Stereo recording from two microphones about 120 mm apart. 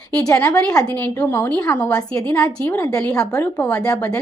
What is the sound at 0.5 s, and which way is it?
A woman's voice, 10° left (ahead or behind).